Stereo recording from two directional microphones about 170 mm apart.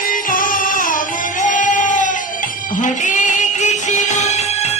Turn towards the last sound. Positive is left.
turn(degrees=45)  # may be behind; listen again after turning